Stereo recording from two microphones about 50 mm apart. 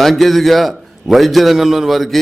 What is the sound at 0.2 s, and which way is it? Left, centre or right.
A man's voice, centre.